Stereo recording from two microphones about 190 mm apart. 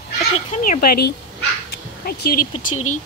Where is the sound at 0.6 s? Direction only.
50° left (ahead or behind).